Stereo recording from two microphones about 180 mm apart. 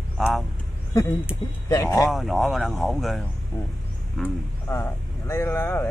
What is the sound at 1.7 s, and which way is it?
Speech, 20° left (ahead or behind).